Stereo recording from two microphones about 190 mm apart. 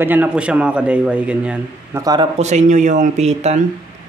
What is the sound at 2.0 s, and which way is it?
Speech, 20° right (ahead or behind).